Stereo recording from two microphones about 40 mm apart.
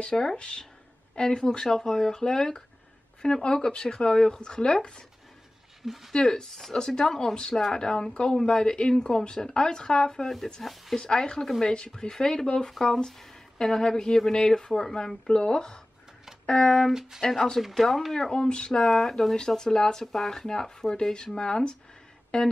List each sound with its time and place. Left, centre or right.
0.1 s speech: centre
0.4 s speech: left
6.1 s speech: centre
10.6 s speech: centre
11.0 s speech: centre
17.6 s speech: centre
18.3 s speech: left
18.7 s speech: centre